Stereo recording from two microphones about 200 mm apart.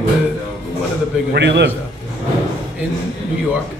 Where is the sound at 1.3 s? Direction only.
60° right (ahead or behind).